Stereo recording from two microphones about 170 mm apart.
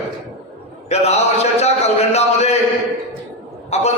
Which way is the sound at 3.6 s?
40° left (ahead or behind).